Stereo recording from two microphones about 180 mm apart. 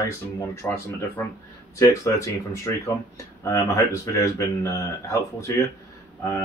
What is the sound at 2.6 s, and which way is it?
Speech, 15° left (ahead or behind).